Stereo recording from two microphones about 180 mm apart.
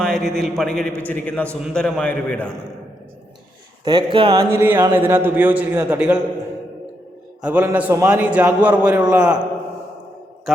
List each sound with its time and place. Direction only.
0.0 s a man's voice: centre (ahead or behind)
3.8 s speech: 25° right (ahead or behind)
4.5 s a man's voice: 10° right (ahead or behind)
7.4 s a man's voice: 5° right (ahead or behind)